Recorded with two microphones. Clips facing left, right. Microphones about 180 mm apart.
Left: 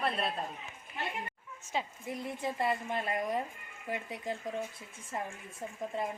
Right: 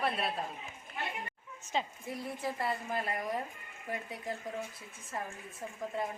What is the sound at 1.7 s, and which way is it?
Speech, 10° left (ahead or behind).